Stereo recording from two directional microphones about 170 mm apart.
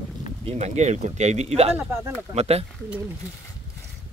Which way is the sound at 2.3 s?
40° right (ahead or behind).